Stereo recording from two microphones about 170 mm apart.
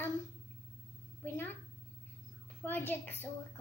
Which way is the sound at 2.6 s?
10° left (ahead or behind).